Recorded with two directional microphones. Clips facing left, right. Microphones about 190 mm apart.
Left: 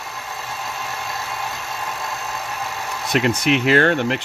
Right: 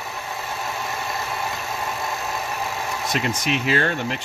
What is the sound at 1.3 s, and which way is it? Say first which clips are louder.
Vehicle: right 1 dB; 10° right (ahead or behind).